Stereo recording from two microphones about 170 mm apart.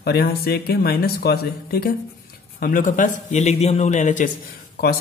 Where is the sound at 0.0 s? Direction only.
75° left (ahead or behind).